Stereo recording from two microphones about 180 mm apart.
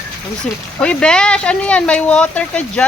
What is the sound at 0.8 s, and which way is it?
Speech, 5° left (ahead or behind).